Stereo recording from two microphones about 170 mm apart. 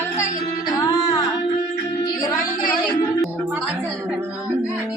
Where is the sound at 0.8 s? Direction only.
20° left (ahead or behind).